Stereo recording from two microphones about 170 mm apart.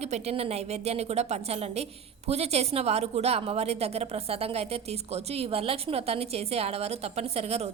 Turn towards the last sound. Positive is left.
turn(degrees=-40)  # may be behind; listen again after turning